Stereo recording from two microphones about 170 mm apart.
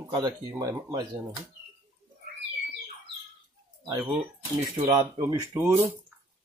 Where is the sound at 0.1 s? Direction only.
25° right (ahead or behind).